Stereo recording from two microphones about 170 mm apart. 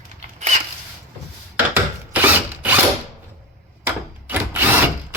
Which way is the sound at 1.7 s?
10° right (ahead or behind).